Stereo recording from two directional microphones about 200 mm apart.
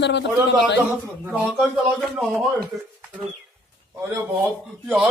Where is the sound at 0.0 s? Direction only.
60° left (ahead or behind).